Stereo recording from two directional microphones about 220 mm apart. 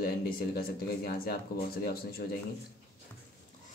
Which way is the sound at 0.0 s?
45° left (ahead or behind).